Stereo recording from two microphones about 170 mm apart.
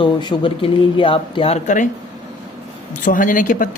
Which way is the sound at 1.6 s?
50° left (ahead or behind).